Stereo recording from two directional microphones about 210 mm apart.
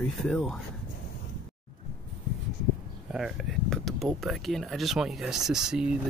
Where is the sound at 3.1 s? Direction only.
Centre (ahead or behind).